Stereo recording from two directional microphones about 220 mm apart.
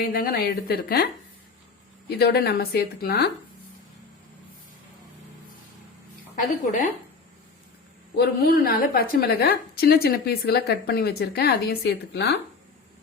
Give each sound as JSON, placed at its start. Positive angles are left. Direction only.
{"t": 0.0, "sound": "a woman's voice", "side_deg": 40}
{"t": 2.0, "sound": "a woman's voice", "side_deg": 45}
{"t": 6.3, "sound": "a woman's voice", "side_deg": 40}
{"t": 8.1, "sound": "a woman's voice", "side_deg": 45}